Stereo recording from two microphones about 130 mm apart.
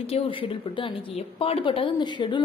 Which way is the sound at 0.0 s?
45° left (ahead or behind).